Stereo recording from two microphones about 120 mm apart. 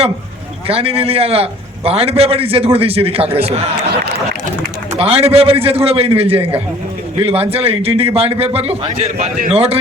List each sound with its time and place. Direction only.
0.7 s a man's voice: 55° right (ahead or behind)
4.9 s a man's voice: 55° right (ahead or behind)